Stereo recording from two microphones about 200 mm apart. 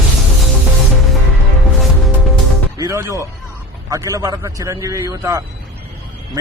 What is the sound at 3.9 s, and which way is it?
Speech, 15° right (ahead or behind).